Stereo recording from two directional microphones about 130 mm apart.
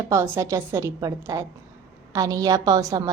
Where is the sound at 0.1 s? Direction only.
20° right (ahead or behind).